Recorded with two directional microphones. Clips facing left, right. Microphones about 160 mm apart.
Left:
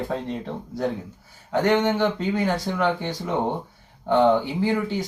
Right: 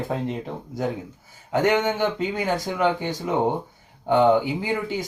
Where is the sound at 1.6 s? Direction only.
15° right (ahead or behind).